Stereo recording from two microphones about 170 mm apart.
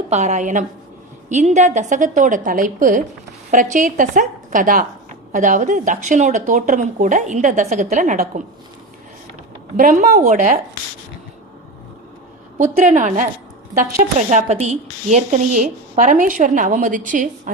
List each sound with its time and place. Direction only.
0.1 s a woman's voice: 45° right (ahead or behind)
9.7 s a woman's voice: 50° right (ahead or behind)
12.5 s a woman's voice: 50° right (ahead or behind)